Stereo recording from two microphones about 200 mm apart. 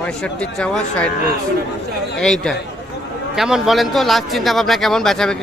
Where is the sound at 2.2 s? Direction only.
Centre (ahead or behind).